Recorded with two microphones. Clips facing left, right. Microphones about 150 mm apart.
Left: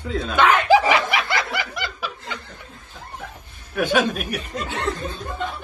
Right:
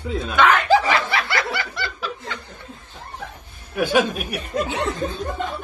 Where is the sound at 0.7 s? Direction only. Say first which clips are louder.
Left 1 dB; 15° left (ahead or behind).